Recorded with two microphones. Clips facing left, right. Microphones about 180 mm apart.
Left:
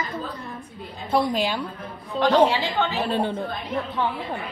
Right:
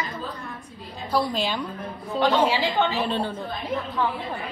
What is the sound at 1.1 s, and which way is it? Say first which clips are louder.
Speech: left 2 dB; 15° left (ahead or behind).